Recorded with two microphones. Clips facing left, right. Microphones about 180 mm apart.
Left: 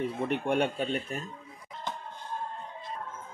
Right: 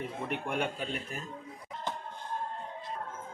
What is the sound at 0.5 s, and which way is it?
Speech, 35° left (ahead or behind).